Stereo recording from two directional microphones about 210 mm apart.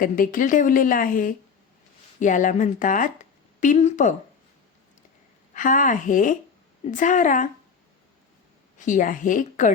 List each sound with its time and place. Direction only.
0.0 s a woman's voice: 40° left (ahead or behind)
5.5 s a woman's voice: 40° left (ahead or behind)
8.8 s a woman's voice: 40° left (ahead or behind)